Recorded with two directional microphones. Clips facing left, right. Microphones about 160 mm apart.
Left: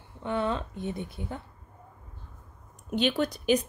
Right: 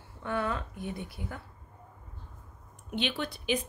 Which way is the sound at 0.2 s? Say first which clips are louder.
Left 3 dB; 20° left (ahead or behind).